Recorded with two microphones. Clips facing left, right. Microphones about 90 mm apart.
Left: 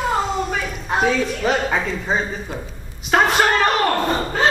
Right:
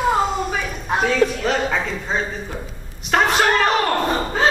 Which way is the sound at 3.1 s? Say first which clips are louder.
Left 1 dB; centre (ahead or behind).